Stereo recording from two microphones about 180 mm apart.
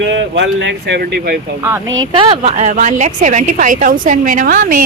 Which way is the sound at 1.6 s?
15° right (ahead or behind).